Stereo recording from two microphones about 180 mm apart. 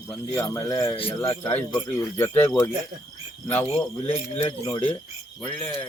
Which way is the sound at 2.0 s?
10° left (ahead or behind).